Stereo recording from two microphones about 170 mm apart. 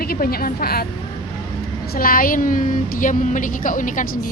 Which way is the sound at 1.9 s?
55° left (ahead or behind).